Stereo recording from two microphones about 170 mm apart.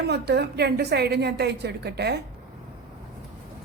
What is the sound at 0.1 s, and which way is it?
A woman's voice, 75° right (ahead or behind).